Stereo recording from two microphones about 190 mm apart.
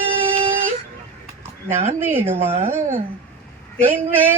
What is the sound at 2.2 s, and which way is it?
Speech, 30° right (ahead or behind).